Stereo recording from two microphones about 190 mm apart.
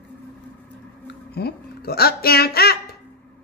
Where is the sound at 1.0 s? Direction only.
55° left (ahead or behind).